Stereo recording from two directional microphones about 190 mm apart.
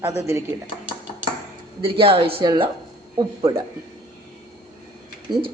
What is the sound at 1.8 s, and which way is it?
Speech, 30° right (ahead or behind).